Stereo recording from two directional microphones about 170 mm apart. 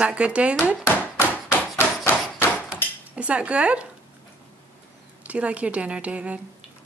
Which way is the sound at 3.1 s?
5° right (ahead or behind).